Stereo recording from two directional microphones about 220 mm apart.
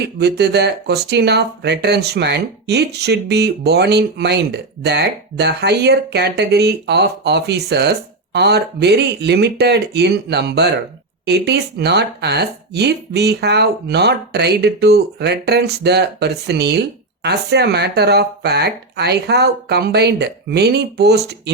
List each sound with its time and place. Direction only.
0.2 s speech: 50° right (ahead or behind)